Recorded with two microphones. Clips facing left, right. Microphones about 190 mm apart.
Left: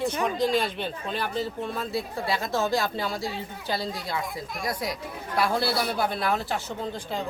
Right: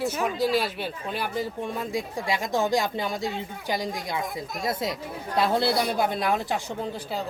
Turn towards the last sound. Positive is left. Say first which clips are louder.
# right 1 dB
turn(degrees=-15)  # may be behind; listen again after turning